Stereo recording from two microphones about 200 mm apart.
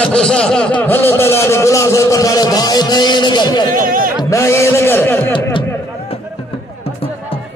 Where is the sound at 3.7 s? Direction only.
45° right (ahead or behind).